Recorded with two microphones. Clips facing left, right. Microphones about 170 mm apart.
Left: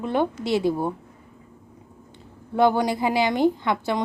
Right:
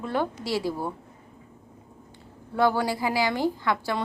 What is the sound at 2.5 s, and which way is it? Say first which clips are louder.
A woman's voice: left 4 dB; 20° left (ahead or behind).